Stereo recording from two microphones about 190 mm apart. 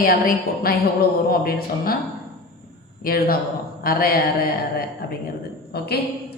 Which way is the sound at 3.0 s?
50° left (ahead or behind).